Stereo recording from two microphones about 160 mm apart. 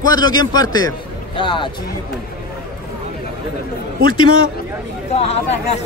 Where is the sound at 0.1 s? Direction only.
25° left (ahead or behind).